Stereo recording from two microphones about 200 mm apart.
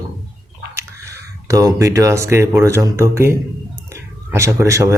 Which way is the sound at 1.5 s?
15° right (ahead or behind).